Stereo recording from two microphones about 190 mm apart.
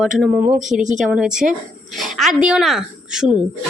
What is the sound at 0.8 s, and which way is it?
Speech, 40° right (ahead or behind).